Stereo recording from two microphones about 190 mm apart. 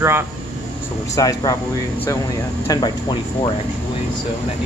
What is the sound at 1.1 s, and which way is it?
Speech, 20° left (ahead or behind).